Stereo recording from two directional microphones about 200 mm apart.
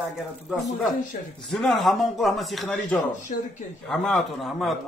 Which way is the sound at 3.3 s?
45° left (ahead or behind).